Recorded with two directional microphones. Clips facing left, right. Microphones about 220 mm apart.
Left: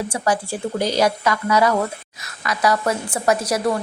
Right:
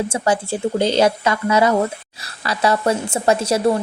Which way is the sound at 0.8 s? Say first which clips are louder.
Right 3 dB; 25° right (ahead or behind).